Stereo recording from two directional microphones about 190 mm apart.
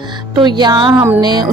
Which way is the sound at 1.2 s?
20° right (ahead or behind).